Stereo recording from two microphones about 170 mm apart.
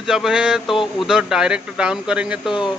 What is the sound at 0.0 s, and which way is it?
Speech, centre (ahead or behind).